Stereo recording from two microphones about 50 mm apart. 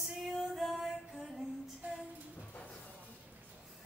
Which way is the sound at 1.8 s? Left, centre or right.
Right.